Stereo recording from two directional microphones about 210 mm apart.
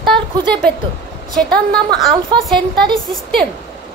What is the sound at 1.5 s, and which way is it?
Speech, 50° right (ahead or behind).